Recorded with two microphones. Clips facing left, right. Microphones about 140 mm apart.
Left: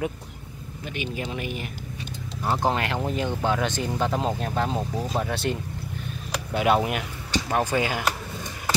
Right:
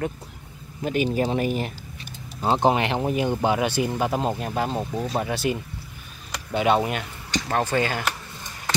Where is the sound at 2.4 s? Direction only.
20° right (ahead or behind); by 8.1 s 10° left (ahead or behind).